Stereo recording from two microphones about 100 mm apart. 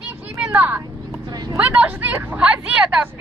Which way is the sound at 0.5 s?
15° right (ahead or behind).